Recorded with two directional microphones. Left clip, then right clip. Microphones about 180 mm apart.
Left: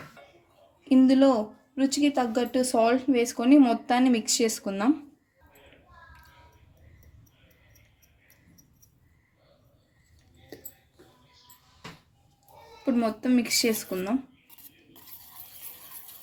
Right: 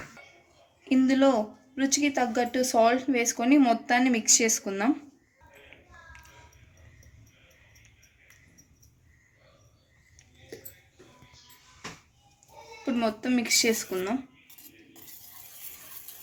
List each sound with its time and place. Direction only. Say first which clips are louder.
0.9 s speech: left 2 dB; 45° left (ahead or behind)
12.8 s speech: left 2 dB; 50° left (ahead or behind)